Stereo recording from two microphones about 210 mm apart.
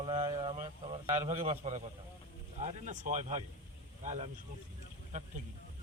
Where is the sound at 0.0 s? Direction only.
25° right (ahead or behind).